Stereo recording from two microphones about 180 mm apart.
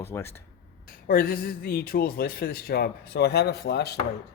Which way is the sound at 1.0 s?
55° left (ahead or behind).